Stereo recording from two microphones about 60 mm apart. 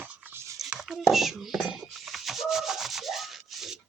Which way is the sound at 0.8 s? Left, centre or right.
Centre.